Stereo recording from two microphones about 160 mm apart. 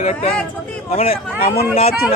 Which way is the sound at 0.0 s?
45° left (ahead or behind).